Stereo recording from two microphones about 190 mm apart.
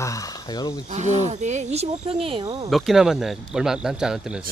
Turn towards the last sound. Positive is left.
turn(degrees=-5)  # may be behind; listen again after turning